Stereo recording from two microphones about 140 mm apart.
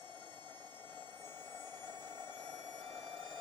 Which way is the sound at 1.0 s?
15° left (ahead or behind).